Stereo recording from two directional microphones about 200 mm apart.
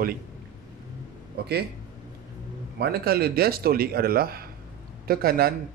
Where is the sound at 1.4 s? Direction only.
55° right (ahead or behind).